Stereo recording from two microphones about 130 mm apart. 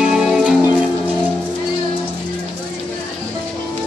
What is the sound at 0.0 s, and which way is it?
Music, 5° right (ahead or behind).